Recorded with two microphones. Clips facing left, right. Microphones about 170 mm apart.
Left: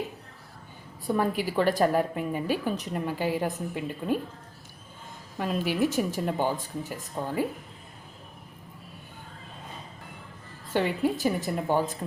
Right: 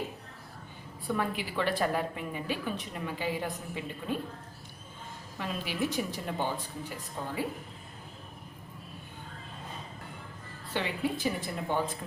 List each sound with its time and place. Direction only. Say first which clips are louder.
1.0 s a woman's voice: left 6 dB; 40° left (ahead or behind)
5.4 s a woman's voice: left 7 dB; 45° left (ahead or behind)
10.7 s a woman's voice: left 6 dB; 45° left (ahead or behind)